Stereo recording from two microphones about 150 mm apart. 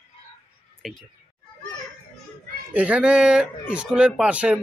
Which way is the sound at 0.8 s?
Centre (ahead or behind).